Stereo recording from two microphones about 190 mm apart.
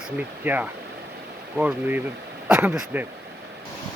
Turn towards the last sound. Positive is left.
turn(degrees=-10)  # may be behind; listen again after turning